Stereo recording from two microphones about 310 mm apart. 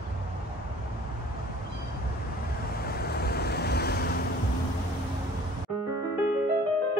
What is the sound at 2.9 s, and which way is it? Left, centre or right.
Waves, left.